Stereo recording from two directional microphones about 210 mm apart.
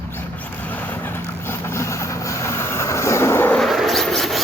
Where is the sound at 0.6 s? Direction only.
10° left (ahead or behind).